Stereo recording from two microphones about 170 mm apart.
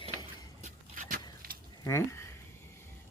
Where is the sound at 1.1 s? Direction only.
60° right (ahead or behind).